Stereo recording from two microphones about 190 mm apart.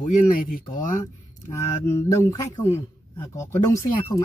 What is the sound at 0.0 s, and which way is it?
Speech, 45° left (ahead or behind).